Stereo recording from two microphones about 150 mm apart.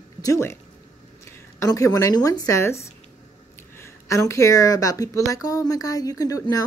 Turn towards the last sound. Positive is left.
turn(degrees=25)  # may be behind; listen again after turning